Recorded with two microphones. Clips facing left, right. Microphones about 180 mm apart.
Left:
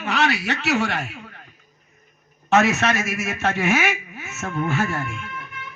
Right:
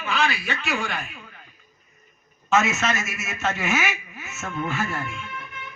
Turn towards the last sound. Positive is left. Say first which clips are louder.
# left 4 dB
turn(degrees=45)  # may be behind; listen again after turning